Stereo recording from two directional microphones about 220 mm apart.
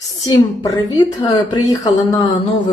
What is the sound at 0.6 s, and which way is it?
Speech, 15° left (ahead or behind).